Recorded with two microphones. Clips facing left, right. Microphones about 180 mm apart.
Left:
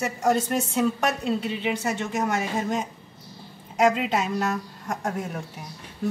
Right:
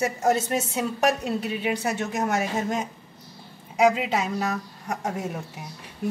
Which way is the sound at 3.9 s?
Centre (ahead or behind).